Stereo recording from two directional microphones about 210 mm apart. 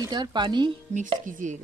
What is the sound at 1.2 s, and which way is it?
Speech, 40° right (ahead or behind).